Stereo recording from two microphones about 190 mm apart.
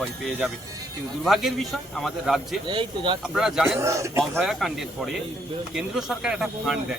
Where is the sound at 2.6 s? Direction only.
25° right (ahead or behind).